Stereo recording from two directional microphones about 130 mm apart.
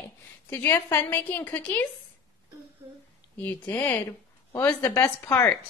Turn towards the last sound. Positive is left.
turn(degrees=20)  # may be behind; listen again after turning